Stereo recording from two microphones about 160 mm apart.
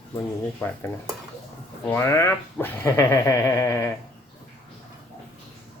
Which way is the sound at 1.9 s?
15° left (ahead or behind).